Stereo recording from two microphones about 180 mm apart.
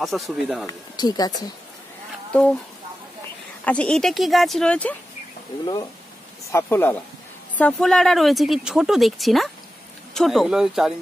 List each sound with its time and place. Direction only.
0.0 s speech: centre (ahead or behind)
0.7 s speech: 20° left (ahead or behind)
3.6 s speech: 5° left (ahead or behind)
6.5 s speech: 10° left (ahead or behind)